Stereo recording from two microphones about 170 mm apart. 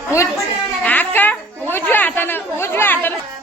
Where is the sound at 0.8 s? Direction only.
10° left (ahead or behind).